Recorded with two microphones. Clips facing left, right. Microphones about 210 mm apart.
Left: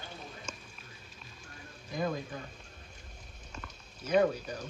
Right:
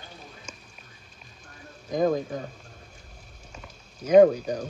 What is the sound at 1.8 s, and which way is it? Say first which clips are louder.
Speech: right 10 dB; 45° right (ahead or behind).